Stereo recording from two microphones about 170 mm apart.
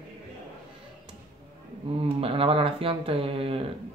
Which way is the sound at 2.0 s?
35° right (ahead or behind).